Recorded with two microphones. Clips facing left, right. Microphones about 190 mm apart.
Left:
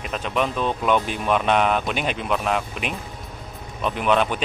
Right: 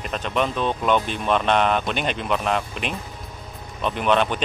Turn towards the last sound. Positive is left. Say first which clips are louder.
# even
turn(degrees=5)  # may be behind; listen again after turning